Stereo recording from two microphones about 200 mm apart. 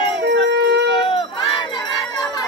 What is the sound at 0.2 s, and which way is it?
Howl, 60° right (ahead or behind).